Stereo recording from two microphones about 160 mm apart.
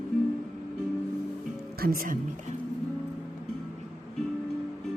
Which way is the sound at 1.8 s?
70° right (ahead or behind).